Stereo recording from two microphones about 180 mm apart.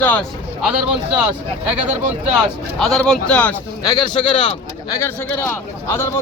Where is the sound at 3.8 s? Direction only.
25° left (ahead or behind).